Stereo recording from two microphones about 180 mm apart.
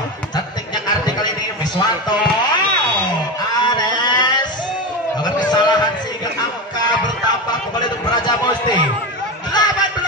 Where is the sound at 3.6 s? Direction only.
25° left (ahead or behind).